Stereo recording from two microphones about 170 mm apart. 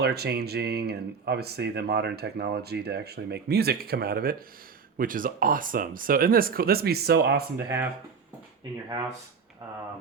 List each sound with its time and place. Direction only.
0.0 s speech: 70° right (ahead or behind)